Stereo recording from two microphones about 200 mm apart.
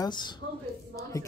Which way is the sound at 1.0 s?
15° left (ahead or behind).